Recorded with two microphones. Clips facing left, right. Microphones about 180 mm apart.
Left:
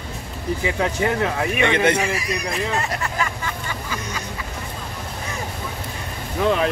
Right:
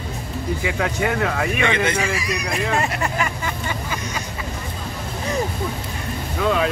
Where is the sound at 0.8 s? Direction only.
20° left (ahead or behind).